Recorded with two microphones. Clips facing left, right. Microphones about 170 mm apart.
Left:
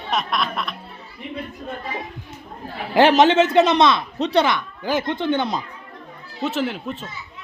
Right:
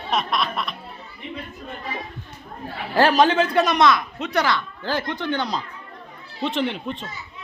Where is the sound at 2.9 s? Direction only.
20° left (ahead or behind).